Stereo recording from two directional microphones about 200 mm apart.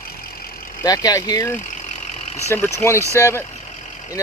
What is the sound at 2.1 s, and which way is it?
Vehicle, 35° left (ahead or behind).